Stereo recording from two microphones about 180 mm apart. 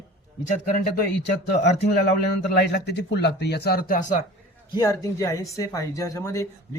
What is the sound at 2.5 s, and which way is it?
Speech, 65° left (ahead or behind).